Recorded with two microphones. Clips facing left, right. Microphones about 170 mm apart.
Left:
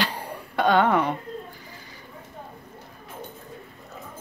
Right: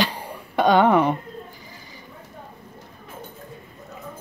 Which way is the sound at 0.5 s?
15° right (ahead or behind).